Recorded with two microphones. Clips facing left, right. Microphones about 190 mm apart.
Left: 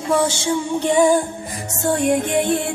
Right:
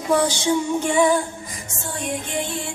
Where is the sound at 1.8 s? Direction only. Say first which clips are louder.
Left 11 dB; 65° left (ahead or behind).